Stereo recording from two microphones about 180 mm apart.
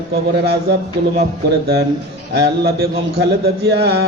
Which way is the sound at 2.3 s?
65° right (ahead or behind).